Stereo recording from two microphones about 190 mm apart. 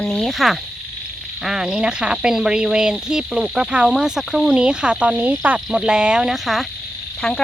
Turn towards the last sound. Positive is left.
turn(degrees=0)  # may be behind; listen again after turning